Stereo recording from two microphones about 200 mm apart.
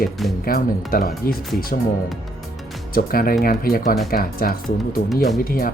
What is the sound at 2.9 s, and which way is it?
Speech, 45° left (ahead or behind).